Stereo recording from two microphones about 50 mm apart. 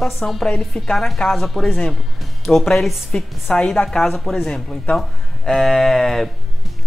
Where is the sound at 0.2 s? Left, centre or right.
Centre.